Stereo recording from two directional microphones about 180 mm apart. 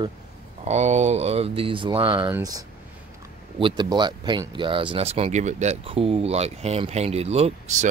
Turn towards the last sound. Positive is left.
turn(degrees=-35)  # may be behind; listen again after turning